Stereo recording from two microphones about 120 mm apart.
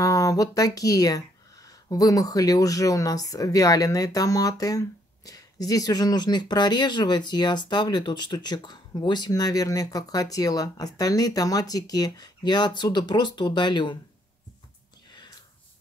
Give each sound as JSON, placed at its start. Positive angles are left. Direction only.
{"t": 0.0, "sound": "speech", "side_deg": 30}